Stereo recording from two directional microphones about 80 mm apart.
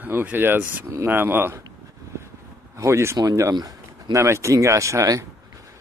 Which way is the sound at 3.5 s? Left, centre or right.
Right.